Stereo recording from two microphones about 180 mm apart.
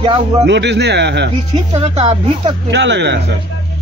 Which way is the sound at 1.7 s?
35° right (ahead or behind).